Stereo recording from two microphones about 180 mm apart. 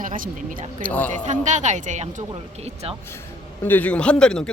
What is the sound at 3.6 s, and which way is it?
Speech, 10° left (ahead or behind).